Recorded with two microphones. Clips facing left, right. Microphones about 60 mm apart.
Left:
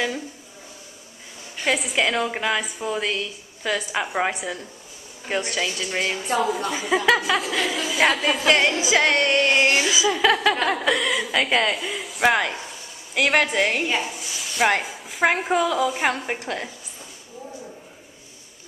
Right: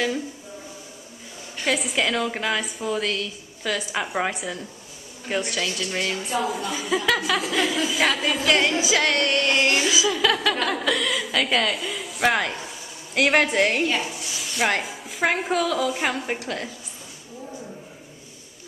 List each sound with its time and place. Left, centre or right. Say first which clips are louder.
1.6 s a woman's voice: left 1 dB; centre
8.5 s music: left 1 dB; centre
9.8 s a woman's voice: left 2 dB; centre
16.3 s a woman's voice: left 1 dB; left